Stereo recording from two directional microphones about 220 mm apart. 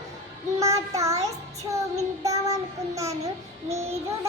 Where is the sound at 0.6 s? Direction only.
15° right (ahead or behind).